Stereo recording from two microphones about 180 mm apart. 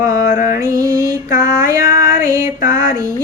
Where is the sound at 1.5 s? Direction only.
15° right (ahead or behind).